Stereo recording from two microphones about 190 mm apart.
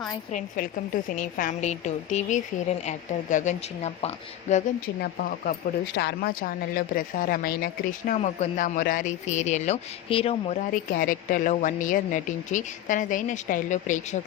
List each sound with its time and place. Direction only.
0.3 s a woman's voice: 45° left (ahead or behind)
4.9 s speech: 55° left (ahead or behind)